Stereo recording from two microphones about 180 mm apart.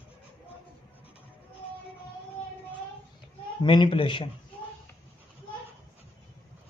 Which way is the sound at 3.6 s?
30° left (ahead or behind).